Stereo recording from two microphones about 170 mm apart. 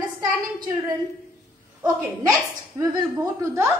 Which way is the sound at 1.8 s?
20° right (ahead or behind).